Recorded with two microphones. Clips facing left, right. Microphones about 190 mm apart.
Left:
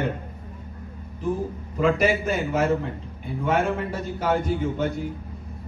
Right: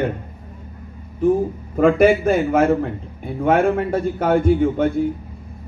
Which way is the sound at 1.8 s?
55° right (ahead or behind).